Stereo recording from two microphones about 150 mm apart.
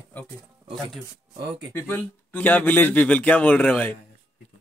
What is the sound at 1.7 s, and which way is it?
Speech, 15° left (ahead or behind).